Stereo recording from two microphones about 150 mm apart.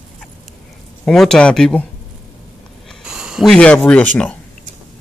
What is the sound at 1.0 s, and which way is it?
Speech, 5° left (ahead or behind).